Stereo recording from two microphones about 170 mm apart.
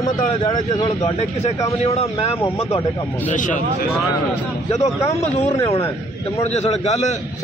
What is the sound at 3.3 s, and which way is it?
Speech, 50° left (ahead or behind).